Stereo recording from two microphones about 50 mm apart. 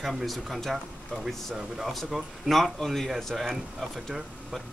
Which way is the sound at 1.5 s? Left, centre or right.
Centre.